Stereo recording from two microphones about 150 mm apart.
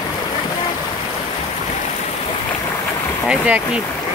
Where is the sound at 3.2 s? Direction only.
10° right (ahead or behind).